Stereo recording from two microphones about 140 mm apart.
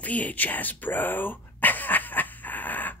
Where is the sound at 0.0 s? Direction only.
10° left (ahead or behind).